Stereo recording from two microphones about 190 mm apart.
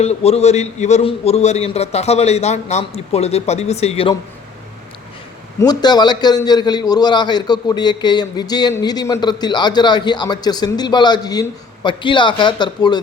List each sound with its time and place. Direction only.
0.0 s a man's voice: 35° left (ahead or behind)
5.5 s a man's voice: 20° left (ahead or behind)